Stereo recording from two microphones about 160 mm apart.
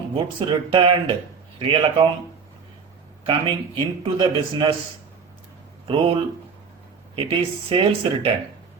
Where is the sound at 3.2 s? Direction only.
30° right (ahead or behind).